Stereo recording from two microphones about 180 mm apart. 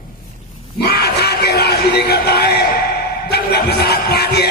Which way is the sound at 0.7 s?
65° left (ahead or behind).